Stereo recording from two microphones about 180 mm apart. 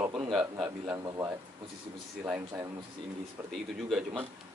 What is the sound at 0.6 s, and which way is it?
A man's voice, 20° right (ahead or behind).